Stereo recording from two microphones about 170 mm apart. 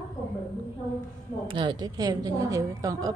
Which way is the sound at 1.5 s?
30° right (ahead or behind).